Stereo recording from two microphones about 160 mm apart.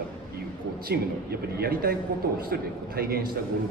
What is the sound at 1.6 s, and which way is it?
A man's voice, 75° right (ahead or behind).